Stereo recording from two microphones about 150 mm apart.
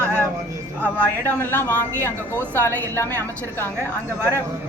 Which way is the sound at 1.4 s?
15° left (ahead or behind).